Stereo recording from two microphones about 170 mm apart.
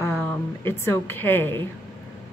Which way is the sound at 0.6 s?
15° left (ahead or behind).